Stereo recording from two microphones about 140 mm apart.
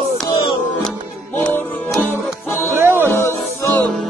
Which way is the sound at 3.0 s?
20° left (ahead or behind).